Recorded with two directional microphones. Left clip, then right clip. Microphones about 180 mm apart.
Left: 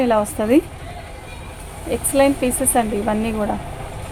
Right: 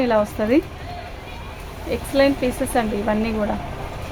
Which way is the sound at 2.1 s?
20° left (ahead or behind).